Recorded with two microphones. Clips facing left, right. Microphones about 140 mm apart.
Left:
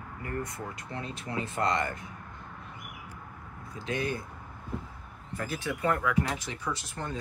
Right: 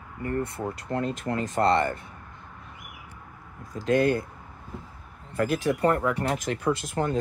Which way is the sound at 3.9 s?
55° right (ahead or behind).